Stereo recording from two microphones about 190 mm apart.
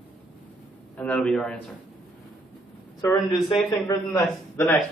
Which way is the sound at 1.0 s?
5° left (ahead or behind).